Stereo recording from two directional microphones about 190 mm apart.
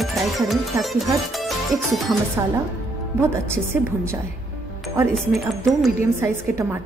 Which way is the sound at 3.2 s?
15° right (ahead or behind).